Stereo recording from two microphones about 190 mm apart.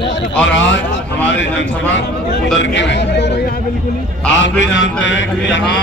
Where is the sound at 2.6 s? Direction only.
70° left (ahead or behind).